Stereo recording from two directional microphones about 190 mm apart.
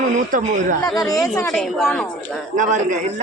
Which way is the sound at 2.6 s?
40° right (ahead or behind).